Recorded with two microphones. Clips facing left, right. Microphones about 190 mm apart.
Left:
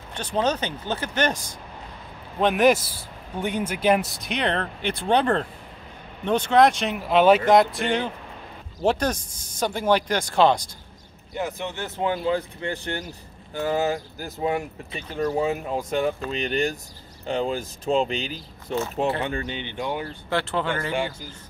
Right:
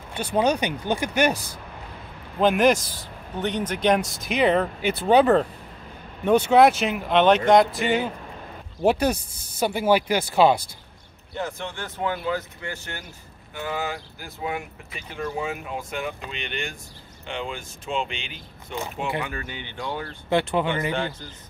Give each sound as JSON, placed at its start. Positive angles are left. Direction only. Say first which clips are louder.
{"t": 0.1, "sound": "speech", "louder": "right 2 dB", "side_deg": -10}
{"t": 2.4, "sound": "speech", "louder": "even", "side_deg": 0}
{"t": 11.3, "sound": "speech", "louder": "left 2 dB", "side_deg": 15}
{"t": 19.2, "sound": "speech", "louder": "left 5 dB", "side_deg": 25}
{"t": 20.2, "sound": "speech", "louder": "right 4 dB", "side_deg": -15}
{"t": 20.9, "sound": "a man's voice", "louder": "left 1 dB", "side_deg": 10}